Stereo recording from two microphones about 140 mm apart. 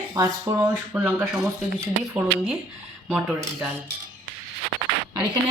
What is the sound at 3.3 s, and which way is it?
Speech, 20° right (ahead or behind).